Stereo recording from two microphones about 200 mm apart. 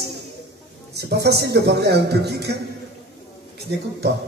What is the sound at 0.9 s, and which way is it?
A man's voice, 55° right (ahead or behind).